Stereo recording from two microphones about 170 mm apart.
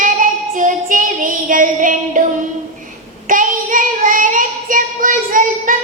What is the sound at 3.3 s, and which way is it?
Child singing, 50° right (ahead or behind).